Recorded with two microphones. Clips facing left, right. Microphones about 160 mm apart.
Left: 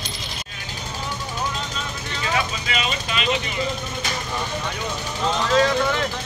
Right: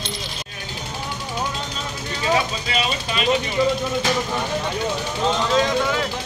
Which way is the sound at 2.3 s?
35° right (ahead or behind).